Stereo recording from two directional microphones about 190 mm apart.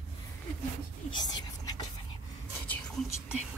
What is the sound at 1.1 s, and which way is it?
Whispering, 20° left (ahead or behind).